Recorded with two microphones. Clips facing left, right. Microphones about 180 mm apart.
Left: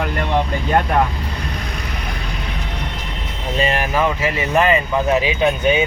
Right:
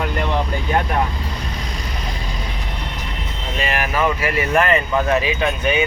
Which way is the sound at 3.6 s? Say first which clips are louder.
Left 4 dB; 30° left (ahead or behind).